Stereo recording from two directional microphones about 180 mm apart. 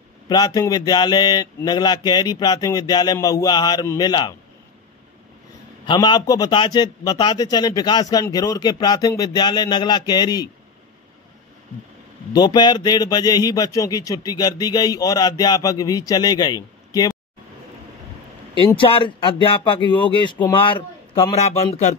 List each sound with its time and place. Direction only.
0.3 s a man's voice: 20° left (ahead or behind)
5.9 s a man's voice: 25° left (ahead or behind)
12.3 s a man's voice: 25° left (ahead or behind)
18.8 s a man's voice: 30° left (ahead or behind)